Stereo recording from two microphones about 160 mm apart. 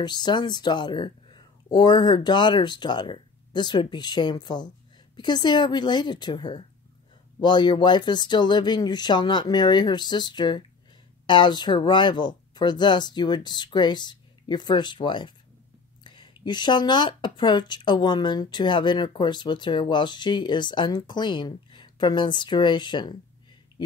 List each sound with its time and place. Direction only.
0.0 s speech: 25° left (ahead or behind)